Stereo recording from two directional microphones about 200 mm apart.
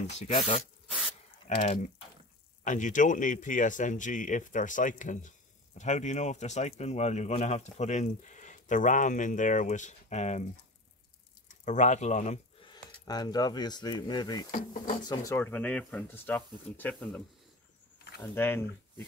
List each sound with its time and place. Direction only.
0.0 s speech: 35° left (ahead or behind)
1.6 s speech: 35° left (ahead or behind)
11.4 s speech: 35° left (ahead or behind)
12.6 s speech: 20° left (ahead or behind)
14.5 s speech: 40° left (ahead or behind)
15.0 s speech: 20° left (ahead or behind)
18.2 s speech: 10° left (ahead or behind)